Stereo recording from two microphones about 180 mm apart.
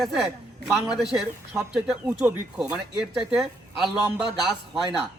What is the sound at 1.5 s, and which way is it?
A man's voice, 5° right (ahead or behind).